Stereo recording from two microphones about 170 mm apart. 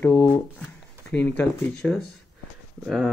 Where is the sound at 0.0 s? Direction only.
20° left (ahead or behind).